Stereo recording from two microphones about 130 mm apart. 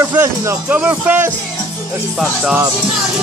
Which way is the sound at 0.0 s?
20° right (ahead or behind).